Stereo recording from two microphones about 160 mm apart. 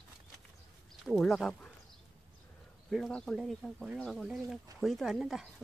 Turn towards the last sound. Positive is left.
turn(degrees=0)  # may be behind; listen again after turning